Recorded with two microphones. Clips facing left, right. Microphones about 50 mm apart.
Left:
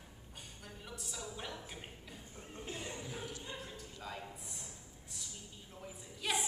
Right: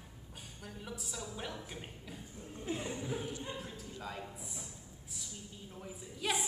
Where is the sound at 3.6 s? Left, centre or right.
Centre.